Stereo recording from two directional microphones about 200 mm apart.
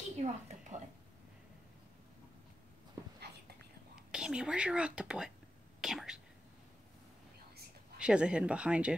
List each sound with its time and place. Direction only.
0.2 s a woman's voice: 35° right (ahead or behind)
3.9 s speech: 5° right (ahead or behind)
8.0 s speech: 5° right (ahead or behind)